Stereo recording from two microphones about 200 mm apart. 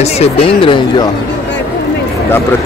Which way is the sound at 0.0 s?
30° left (ahead or behind).